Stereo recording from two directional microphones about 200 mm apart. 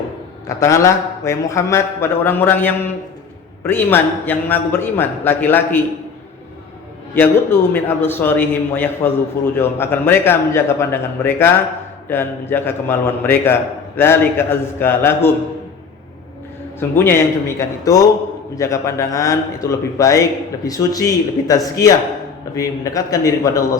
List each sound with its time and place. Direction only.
0.4 s a man's voice: 15° left (ahead or behind)
7.2 s a man's voice: 10° left (ahead or behind)
16.9 s a man's voice: 10° left (ahead or behind)